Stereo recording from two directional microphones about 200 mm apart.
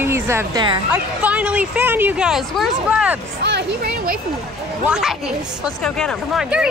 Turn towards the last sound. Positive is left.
turn(degrees=-5)  # may be behind; listen again after turning